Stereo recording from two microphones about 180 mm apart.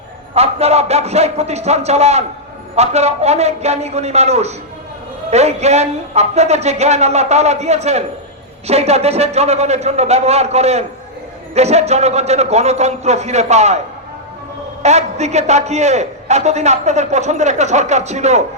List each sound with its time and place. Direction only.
0.3 s a man's voice: 35° right (ahead or behind)